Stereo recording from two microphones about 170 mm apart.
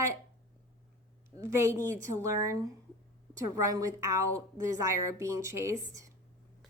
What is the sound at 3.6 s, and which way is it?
A woman's voice, 20° right (ahead or behind).